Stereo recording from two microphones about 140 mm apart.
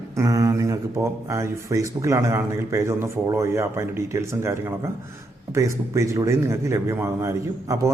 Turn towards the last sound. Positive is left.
turn(degrees=-20)  # may be behind; listen again after turning